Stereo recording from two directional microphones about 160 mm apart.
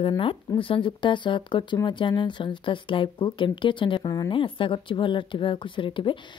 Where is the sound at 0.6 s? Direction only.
35° left (ahead or behind).